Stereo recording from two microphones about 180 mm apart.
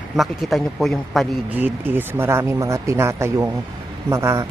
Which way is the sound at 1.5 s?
10° right (ahead or behind).